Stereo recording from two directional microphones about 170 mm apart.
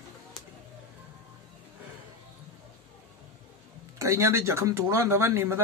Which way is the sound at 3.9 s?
15° right (ahead or behind).